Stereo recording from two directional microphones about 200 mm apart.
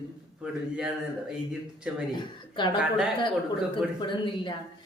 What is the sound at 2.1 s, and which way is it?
Speech, 20° left (ahead or behind).